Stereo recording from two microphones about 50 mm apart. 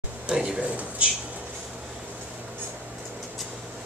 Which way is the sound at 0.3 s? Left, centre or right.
Centre.